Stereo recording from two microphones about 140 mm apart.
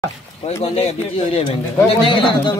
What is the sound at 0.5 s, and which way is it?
Speech, 45° left (ahead or behind).